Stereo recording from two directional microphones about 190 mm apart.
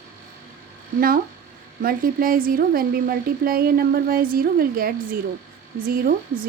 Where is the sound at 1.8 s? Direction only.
50° right (ahead or behind).